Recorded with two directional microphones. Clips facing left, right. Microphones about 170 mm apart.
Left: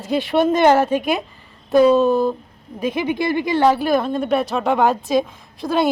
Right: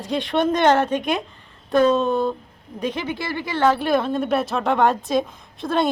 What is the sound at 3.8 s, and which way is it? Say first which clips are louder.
Speech: left 2 dB; centre (ahead or behind).